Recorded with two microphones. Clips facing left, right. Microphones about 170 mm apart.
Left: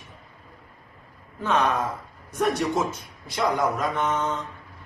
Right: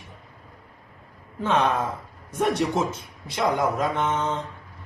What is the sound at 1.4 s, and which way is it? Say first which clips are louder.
A man's voice: right 1 dB; 25° right (ahead or behind).